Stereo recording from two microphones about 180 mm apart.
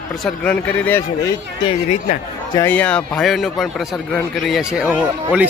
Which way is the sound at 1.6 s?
40° left (ahead or behind).